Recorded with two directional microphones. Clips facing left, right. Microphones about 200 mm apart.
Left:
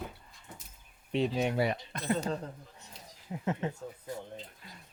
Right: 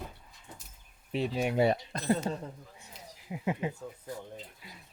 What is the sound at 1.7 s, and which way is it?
Speech, 35° right (ahead or behind).